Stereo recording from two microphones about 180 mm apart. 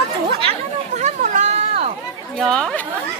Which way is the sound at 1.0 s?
40° right (ahead or behind).